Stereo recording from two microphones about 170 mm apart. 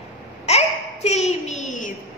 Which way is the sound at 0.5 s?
40° left (ahead or behind).